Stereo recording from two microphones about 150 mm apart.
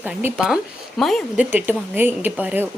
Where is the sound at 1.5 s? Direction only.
15° right (ahead or behind).